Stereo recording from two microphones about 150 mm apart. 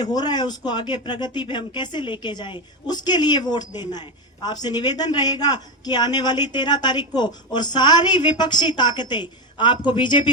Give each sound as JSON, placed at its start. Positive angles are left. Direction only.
{"t": 0.0, "sound": "a man's voice", "side_deg": 30}